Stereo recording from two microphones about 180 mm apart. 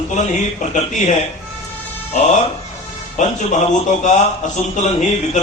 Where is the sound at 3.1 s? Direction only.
40° left (ahead or behind).